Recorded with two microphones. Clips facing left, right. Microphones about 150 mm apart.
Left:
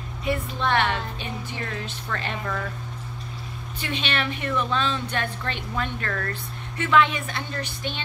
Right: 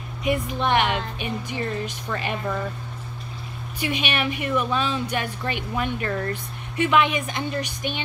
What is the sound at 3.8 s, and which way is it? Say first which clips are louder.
A woman's voice: right 3 dB; 10° right (ahead or behind).